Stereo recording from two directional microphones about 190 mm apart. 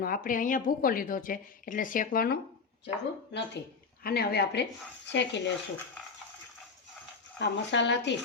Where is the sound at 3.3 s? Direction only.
60° left (ahead or behind).